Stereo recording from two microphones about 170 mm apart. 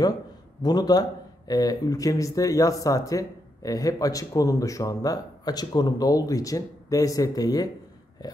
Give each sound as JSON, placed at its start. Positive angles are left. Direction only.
{"t": 0.6, "sound": "speech", "side_deg": 25}